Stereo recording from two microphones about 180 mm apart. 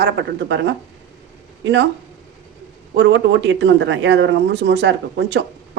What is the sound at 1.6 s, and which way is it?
Speech, 90° right.